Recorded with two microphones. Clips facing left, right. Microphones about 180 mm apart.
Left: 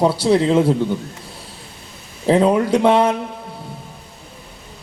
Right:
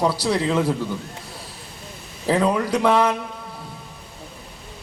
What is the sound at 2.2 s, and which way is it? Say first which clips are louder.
Speech: left 5 dB; 30° left (ahead or behind).